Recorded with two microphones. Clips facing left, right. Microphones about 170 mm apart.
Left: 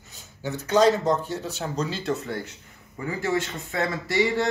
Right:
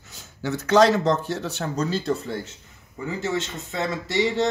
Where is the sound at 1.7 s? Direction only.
40° right (ahead or behind).